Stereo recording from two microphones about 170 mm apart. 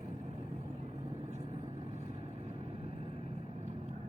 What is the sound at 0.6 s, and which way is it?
Vehicle, 40° right (ahead or behind).